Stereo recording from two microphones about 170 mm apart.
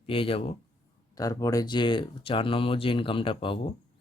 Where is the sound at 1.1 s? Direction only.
20° left (ahead or behind).